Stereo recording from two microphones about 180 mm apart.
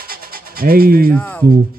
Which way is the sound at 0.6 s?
55° right (ahead or behind).